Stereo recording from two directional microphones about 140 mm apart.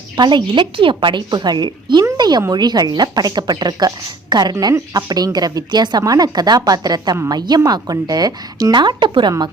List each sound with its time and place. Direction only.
0.2 s a woman's voice: 35° right (ahead or behind)